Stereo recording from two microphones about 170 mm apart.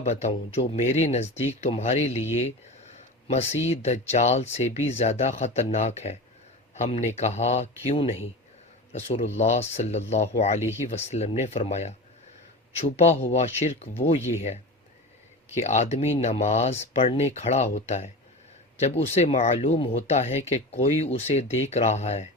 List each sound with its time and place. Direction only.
0.0 s speech: 40° left (ahead or behind)
15.5 s speech: 40° left (ahead or behind)